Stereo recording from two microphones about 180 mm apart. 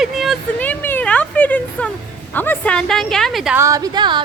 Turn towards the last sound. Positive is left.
turn(degrees=-25)  # may be behind; listen again after turning